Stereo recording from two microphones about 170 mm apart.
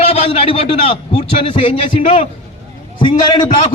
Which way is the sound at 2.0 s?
45° left (ahead or behind).